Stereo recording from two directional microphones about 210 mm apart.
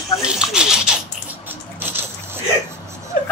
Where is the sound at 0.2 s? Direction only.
5° right (ahead or behind).